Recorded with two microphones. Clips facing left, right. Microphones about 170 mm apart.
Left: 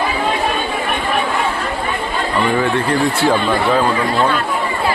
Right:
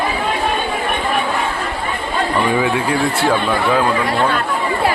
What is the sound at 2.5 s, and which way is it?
Speech, 10° right (ahead or behind).